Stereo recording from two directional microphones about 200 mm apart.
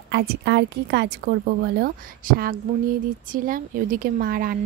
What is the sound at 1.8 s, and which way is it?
Speech, 45° right (ahead or behind).